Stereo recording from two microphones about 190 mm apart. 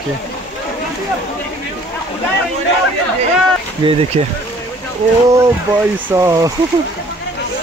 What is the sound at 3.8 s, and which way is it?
Speech, 25° right (ahead or behind).